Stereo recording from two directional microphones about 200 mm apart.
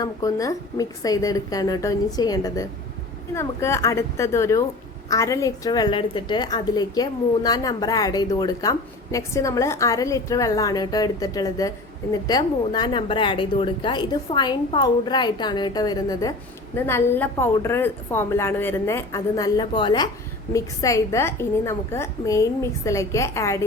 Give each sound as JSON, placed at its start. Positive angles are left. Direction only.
{"t": 0.0, "sound": "a woman's voice", "side_deg": 15}